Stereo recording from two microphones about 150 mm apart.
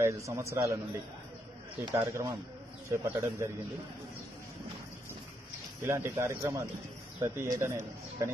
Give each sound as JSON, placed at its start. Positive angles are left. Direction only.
{"t": 0.0, "sound": "speech", "side_deg": -20}
{"t": 2.0, "sound": "speech", "side_deg": -20}
{"t": 5.8, "sound": "a man's voice", "side_deg": -15}